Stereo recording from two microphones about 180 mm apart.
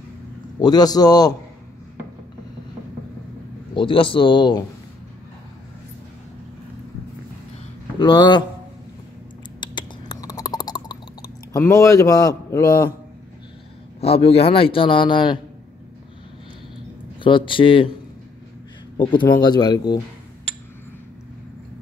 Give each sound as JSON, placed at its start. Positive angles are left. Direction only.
{"t": 0.6, "sound": "speech", "side_deg": 20}
{"t": 3.7, "sound": "speech", "side_deg": 30}
{"t": 8.0, "sound": "speech", "side_deg": 25}
{"t": 9.6, "sound": "a sound", "side_deg": 25}
{"t": 11.5, "sound": "a man's voice", "side_deg": 15}
{"t": 14.0, "sound": "a man's voice", "side_deg": 35}
{"t": 17.2, "sound": "speech", "side_deg": 30}
{"t": 18.9, "sound": "speech", "side_deg": 25}